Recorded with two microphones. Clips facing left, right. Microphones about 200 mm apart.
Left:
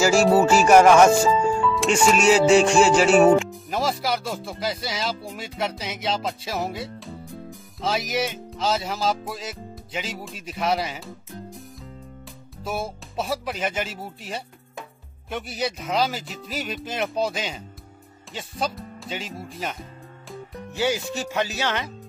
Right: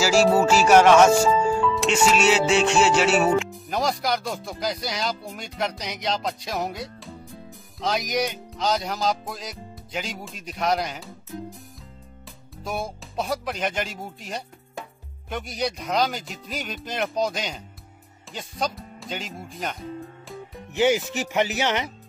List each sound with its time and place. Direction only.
0.3 s music: 5° left (ahead or behind)
12.6 s music: 5° left (ahead or behind)
20.7 s speech: 20° right (ahead or behind)